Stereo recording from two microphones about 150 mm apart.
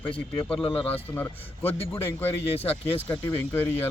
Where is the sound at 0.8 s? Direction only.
15° left (ahead or behind).